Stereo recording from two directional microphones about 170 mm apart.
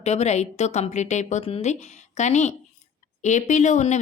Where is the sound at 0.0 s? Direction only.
40° left (ahead or behind).